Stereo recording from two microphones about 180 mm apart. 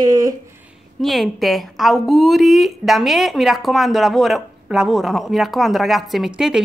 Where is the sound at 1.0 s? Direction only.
Centre (ahead or behind).